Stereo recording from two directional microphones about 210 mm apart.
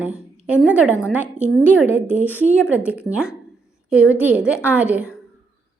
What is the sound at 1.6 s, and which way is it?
A woman's voice, 5° right (ahead or behind).